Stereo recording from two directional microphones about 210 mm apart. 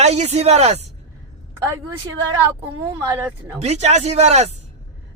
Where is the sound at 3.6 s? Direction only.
30° right (ahead or behind).